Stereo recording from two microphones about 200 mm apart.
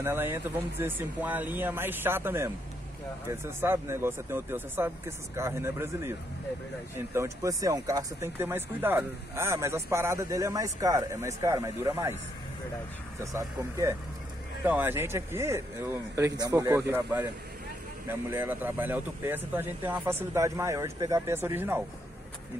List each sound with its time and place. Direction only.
0.0 s speech: 10° right (ahead or behind)
7.2 s speech: 15° right (ahead or behind)
13.2 s speech: 15° right (ahead or behind)